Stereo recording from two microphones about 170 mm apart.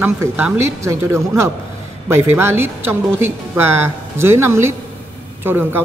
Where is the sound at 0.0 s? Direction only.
10° right (ahead or behind).